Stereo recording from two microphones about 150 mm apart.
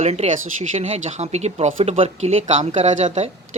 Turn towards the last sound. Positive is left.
turn(degrees=-50)  # may be behind; listen again after turning